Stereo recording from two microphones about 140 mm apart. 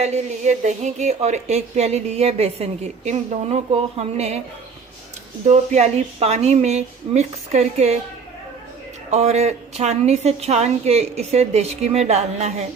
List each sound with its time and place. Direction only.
0.0 s a woman's voice: 55° right (ahead or behind)
5.5 s a woman's voice: 50° right (ahead or behind)
9.0 s a woman's voice: 50° right (ahead or behind)